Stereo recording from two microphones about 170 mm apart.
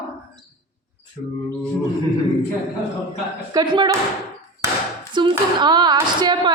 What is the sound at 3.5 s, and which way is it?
Speech, 25° right (ahead or behind).